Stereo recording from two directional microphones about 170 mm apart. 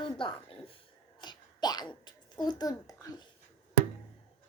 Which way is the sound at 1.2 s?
25° left (ahead or behind).